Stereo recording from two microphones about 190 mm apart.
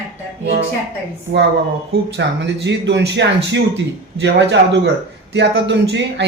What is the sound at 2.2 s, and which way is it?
Speech, 65° right (ahead or behind).